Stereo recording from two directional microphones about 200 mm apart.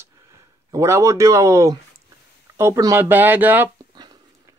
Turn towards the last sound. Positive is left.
turn(degrees=-10)  # may be behind; listen again after turning